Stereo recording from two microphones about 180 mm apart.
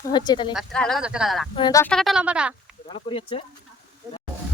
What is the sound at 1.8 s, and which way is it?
Speech, 5° left (ahead or behind).